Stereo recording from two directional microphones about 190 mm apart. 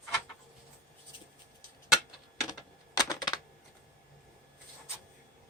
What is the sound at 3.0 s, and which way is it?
Typewriter, 20° left (ahead or behind).